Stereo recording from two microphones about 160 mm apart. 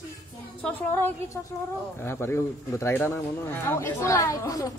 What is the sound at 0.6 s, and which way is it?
Speech, 10° left (ahead or behind).